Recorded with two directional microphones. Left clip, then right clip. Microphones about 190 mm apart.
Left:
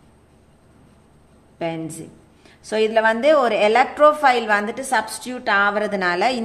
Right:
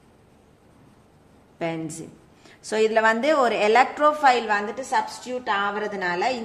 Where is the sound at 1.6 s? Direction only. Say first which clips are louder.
Left 2 dB; 5° left (ahead or behind).